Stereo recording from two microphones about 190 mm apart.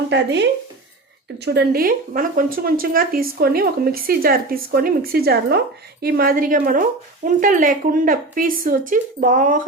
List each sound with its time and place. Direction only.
0.1 s speech: 65° right (ahead or behind); by 9.6 s 45° right (ahead or behind)